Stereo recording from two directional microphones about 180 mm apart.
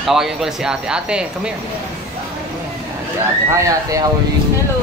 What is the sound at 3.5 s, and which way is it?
Speech, 15° right (ahead or behind).